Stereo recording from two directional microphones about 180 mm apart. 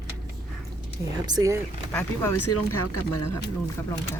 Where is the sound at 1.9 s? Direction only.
10° left (ahead or behind).